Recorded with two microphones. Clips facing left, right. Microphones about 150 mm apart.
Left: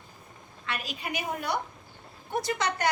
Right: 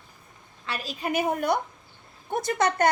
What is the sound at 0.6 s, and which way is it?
A woman's voice, 35° right (ahead or behind).